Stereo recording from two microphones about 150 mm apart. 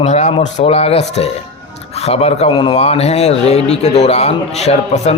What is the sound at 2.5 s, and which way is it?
Speech, 30° left (ahead or behind).